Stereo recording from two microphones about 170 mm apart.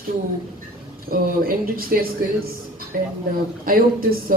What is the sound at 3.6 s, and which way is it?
Speech, 60° right (ahead or behind).